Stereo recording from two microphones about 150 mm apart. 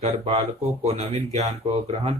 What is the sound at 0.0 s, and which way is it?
Speech, 40° right (ahead or behind).